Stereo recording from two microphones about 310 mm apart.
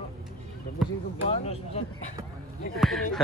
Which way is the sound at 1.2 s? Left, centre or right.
Centre.